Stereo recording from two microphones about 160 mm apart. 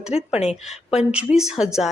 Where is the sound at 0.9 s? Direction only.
5° right (ahead or behind).